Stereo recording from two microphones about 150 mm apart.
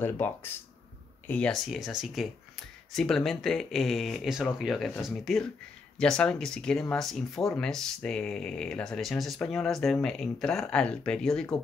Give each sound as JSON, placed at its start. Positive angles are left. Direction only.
{"t": 0.0, "sound": "speech", "side_deg": 15}